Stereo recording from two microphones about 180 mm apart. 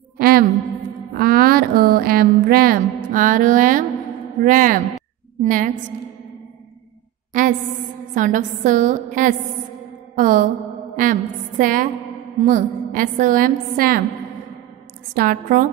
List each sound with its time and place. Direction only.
0.2 s a sound: 55° right (ahead or behind)
4.4 s a woman's voice: 50° right (ahead or behind)
8.1 s a woman's voice: 45° right (ahead or behind)
15.1 s a woman's voice: 55° right (ahead or behind)